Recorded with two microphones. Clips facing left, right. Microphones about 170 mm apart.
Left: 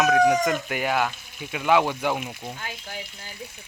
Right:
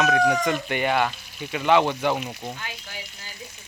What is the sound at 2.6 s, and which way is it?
Speech, 45° left (ahead or behind).